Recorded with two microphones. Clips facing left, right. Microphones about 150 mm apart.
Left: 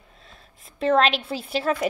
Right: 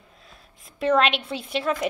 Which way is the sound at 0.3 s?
Centre (ahead or behind).